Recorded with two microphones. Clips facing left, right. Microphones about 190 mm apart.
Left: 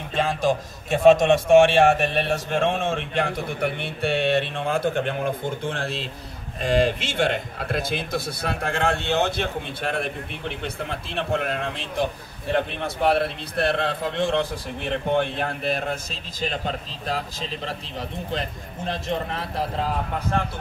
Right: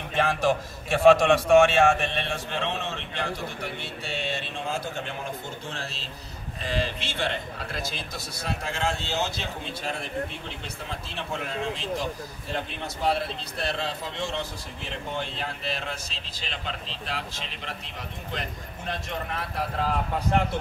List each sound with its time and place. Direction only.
0.1 s a man's voice: 15° left (ahead or behind)
1.8 s speech: 40° left (ahead or behind)
18.9 s a man's voice: 30° left (ahead or behind)